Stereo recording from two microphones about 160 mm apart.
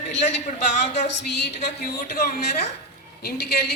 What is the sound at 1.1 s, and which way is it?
Speech, 90° left.